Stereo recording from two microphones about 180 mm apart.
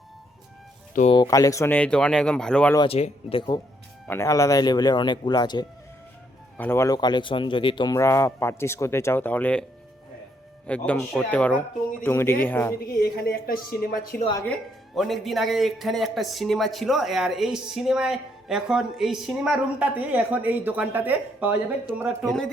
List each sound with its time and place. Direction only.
1.1 s speech: 20° left (ahead or behind); by 2.7 s 5° left (ahead or behind)
2.7 s speech: 30° left (ahead or behind)
4.0 s speech: 15° left (ahead or behind)
10.7 s speech: 5° left (ahead or behind)
12.8 s a woman's voice: 55° left (ahead or behind)
14.5 s a man's voice: centre (ahead or behind)